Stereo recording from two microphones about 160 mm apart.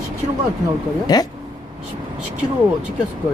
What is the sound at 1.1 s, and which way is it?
Speech, 25° left (ahead or behind).